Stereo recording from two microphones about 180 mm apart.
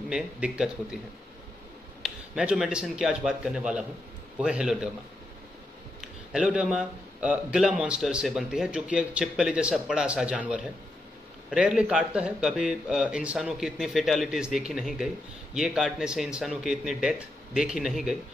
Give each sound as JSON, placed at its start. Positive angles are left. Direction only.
{"t": 0.1, "sound": "a man's voice", "side_deg": -5}
{"t": 2.0, "sound": "a man's voice", "side_deg": -5}
{"t": 5.9, "sound": "a man's voice", "side_deg": -5}
{"t": 11.5, "sound": "a man's voice", "side_deg": -5}